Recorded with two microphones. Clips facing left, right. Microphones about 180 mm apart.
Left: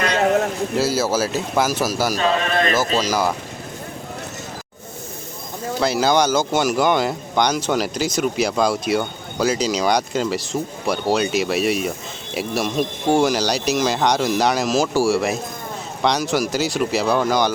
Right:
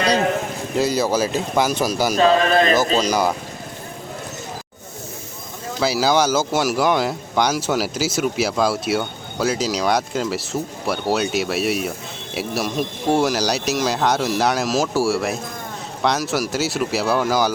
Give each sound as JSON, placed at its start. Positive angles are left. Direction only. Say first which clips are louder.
{"t": 0.8, "sound": "speech", "louder": "right 2 dB", "side_deg": 5}
{"t": 2.2, "sound": "a man's voice", "louder": "right 6 dB", "side_deg": -35}
{"t": 2.9, "sound": "speech", "louder": "right 1 dB", "side_deg": 5}
{"t": 5.8, "sound": "speech", "louder": "even", "side_deg": -5}